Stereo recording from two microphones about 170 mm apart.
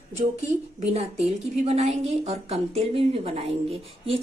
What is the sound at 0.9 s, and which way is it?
A woman's voice, 40° right (ahead or behind).